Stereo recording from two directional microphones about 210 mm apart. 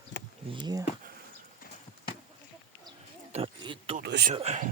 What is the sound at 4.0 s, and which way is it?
Speech, 50° right (ahead or behind).